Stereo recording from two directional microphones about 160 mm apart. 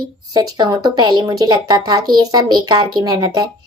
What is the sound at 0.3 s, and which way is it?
Speech, 25° right (ahead or behind).